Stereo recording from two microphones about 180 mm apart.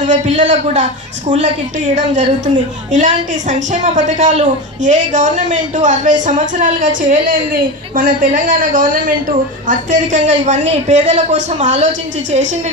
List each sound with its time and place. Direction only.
0.0 s a man's voice: 40° right (ahead or behind)
2.0 s a woman's voice: 40° right (ahead or behind)
7.9 s a woman's voice: 50° right (ahead or behind)